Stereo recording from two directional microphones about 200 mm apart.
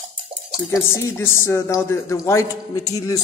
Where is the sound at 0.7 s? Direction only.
15° left (ahead or behind).